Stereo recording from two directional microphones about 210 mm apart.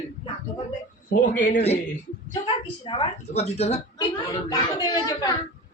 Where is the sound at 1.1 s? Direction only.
40° left (ahead or behind).